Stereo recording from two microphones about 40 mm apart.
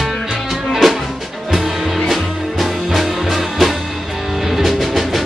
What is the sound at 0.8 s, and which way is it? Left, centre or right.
Music, centre.